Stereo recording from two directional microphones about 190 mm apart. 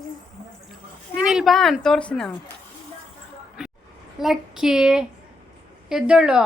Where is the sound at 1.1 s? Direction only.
5° right (ahead or behind).